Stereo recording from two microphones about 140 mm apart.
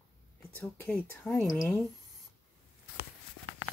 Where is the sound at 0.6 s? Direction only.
10° left (ahead or behind).